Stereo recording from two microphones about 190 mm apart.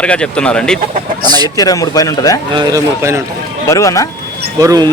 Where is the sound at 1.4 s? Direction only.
20° left (ahead or behind).